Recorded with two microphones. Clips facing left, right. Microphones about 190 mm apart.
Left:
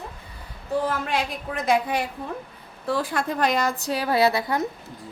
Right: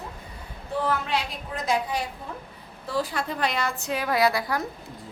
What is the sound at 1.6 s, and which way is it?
A woman's voice, 60° left (ahead or behind).